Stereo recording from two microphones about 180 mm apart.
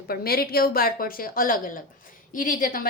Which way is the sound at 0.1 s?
55° left (ahead or behind).